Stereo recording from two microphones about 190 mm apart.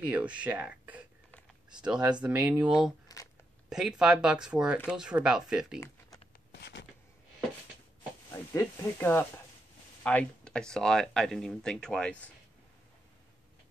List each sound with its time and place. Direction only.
0.0 s speech: 5° right (ahead or behind)
3.1 s a sound: 20° left (ahead or behind)
3.6 s speech: 5° right (ahead or behind)
5.8 s typing: 20° left (ahead or behind)
6.5 s a sound: 65° left (ahead or behind)
8.3 s speech: 15° left (ahead or behind)